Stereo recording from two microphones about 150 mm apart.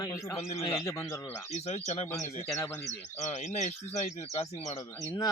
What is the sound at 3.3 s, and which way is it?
Speech, 50° left (ahead or behind).